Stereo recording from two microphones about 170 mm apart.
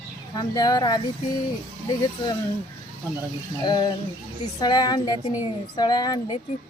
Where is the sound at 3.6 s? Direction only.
25° left (ahead or behind).